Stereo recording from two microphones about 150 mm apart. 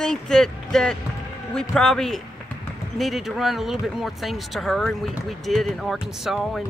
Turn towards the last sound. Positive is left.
turn(degrees=0)  # may be behind; listen again after turning